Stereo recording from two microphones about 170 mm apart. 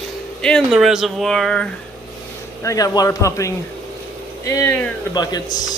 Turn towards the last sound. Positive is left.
turn(degrees=25)  # may be behind; listen again after turning